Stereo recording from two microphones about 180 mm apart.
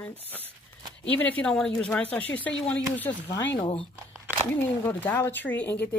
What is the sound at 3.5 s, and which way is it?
Speech, 30° left (ahead or behind).